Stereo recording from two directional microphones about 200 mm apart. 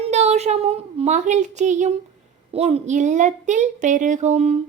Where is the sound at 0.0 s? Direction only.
35° right (ahead or behind).